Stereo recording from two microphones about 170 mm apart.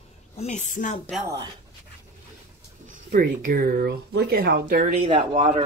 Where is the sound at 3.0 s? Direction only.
60° right (ahead or behind).